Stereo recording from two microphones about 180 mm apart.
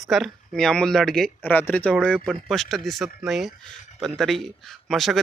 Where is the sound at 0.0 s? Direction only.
Centre (ahead or behind).